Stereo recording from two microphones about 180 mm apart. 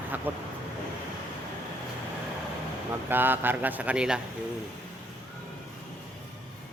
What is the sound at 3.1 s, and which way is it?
Speech, 10° right (ahead or behind).